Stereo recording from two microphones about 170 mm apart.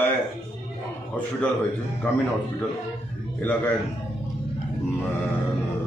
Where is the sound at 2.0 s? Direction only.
10° left (ahead or behind).